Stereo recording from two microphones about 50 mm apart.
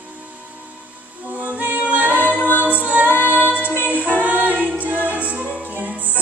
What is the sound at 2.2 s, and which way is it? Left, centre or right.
A capella, right.